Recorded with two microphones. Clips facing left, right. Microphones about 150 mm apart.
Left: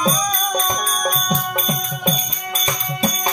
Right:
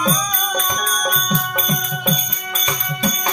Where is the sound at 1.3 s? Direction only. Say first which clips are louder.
Even; 35° left (ahead or behind).